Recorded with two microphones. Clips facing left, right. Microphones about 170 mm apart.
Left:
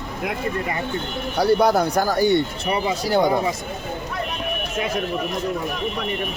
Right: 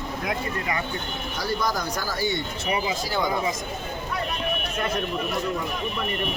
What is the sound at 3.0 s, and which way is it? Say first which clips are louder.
Speech: left 8 dB; 65° left (ahead or behind).